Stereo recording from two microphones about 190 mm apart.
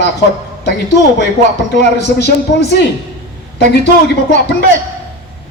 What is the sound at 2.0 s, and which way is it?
Speech, 60° left (ahead or behind).